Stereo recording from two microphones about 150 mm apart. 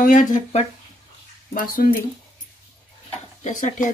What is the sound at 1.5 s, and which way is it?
Speech, 75° left (ahead or behind).